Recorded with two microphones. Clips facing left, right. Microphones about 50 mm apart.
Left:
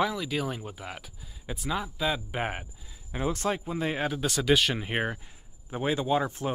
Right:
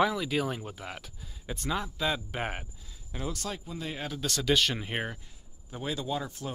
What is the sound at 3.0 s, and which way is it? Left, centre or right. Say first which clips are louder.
Speech: left 7 dB; left.